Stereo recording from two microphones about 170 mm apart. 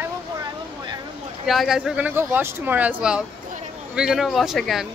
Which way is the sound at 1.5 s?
Centre (ahead or behind).